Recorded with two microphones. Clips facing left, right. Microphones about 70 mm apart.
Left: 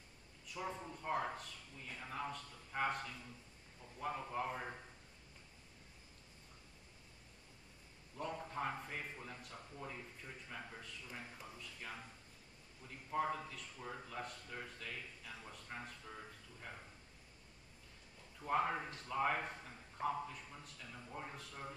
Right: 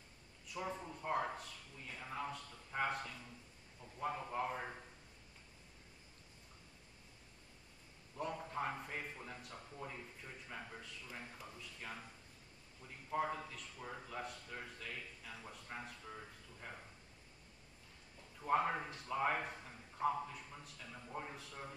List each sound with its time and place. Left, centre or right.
0.7 s a man's voice: centre
8.2 s a man's voice: centre
18.4 s a man's voice: centre
20.6 s a sound: centre